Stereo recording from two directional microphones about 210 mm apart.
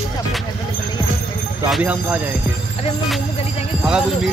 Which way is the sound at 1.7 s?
5° right (ahead or behind).